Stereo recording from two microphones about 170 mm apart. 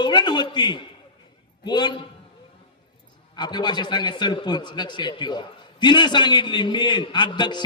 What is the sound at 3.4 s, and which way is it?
A man's voice, 25° left (ahead or behind).